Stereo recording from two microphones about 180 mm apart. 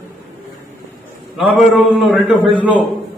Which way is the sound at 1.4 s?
Centre (ahead or behind).